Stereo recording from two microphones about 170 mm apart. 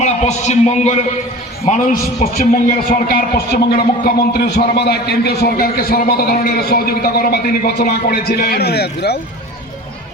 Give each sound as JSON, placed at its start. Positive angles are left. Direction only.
{"t": 0.0, "sound": "a man's voice", "side_deg": 40}